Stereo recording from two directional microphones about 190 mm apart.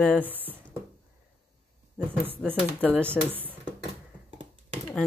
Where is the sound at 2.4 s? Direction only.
5° right (ahead or behind).